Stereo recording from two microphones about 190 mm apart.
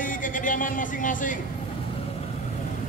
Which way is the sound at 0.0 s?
45° left (ahead or behind).